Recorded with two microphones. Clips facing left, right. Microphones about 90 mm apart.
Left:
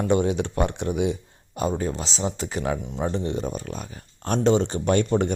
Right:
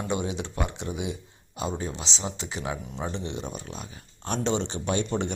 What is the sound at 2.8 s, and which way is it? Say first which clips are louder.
Speech: left 6 dB; 25° left (ahead or behind).